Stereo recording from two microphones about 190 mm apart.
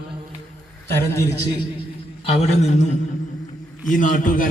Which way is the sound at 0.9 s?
10° left (ahead or behind).